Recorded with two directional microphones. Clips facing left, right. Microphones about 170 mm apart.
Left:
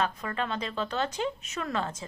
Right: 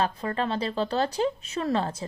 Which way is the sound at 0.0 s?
30° right (ahead or behind).